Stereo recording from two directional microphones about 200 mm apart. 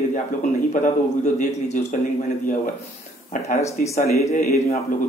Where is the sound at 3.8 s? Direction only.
35° left (ahead or behind).